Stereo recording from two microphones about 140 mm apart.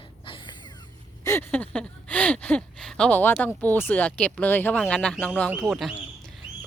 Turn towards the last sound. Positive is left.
turn(degrees=0)  # may be behind; listen again after turning